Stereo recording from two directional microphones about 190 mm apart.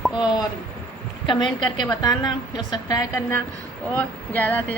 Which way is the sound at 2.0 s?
20° left (ahead or behind).